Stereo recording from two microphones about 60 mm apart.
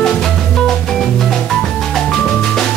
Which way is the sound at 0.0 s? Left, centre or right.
Centre.